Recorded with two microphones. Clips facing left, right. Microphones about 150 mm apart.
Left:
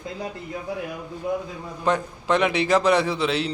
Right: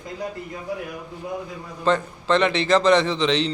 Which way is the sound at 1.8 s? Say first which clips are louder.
Right 2 dB; 10° left (ahead or behind).